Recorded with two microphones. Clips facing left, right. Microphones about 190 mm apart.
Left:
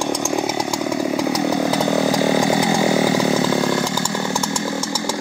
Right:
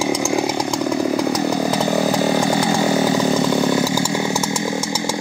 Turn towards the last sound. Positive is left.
turn(degrees=-10)  # may be behind; listen again after turning